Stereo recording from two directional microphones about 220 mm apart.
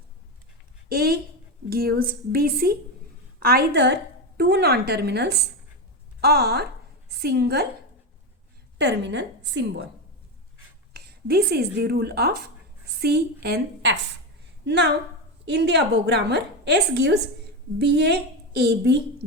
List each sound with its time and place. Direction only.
0.9 s a woman's voice: 45° right (ahead or behind)
8.8 s a woman's voice: 50° right (ahead or behind)
10.9 s a sound: 45° right (ahead or behind)
11.8 s a woman's voice: 45° right (ahead or behind)